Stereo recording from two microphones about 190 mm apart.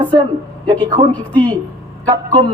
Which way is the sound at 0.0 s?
25° right (ahead or behind).